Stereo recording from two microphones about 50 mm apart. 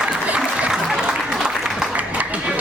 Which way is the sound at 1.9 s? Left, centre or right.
Right.